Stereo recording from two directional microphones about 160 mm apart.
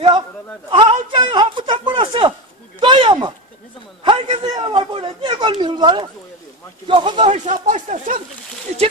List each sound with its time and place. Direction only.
0.7 s a sound: 30° right (ahead or behind)
6.9 s speech: 30° right (ahead or behind)
7.3 s speech: 50° right (ahead or behind)